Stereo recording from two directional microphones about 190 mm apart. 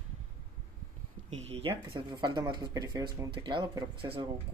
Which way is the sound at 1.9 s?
20° right (ahead or behind).